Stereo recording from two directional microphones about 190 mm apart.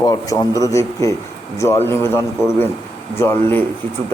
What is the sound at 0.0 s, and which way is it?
A man's voice, 20° left (ahead or behind).